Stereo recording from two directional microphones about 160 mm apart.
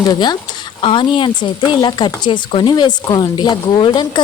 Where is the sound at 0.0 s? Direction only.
25° left (ahead or behind).